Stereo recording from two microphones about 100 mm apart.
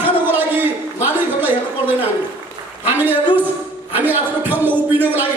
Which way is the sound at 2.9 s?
20° right (ahead or behind).